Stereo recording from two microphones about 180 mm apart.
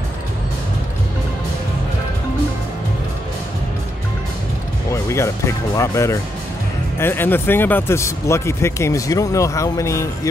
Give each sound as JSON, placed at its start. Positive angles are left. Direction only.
{"t": 4.9, "sound": "speech", "side_deg": 15}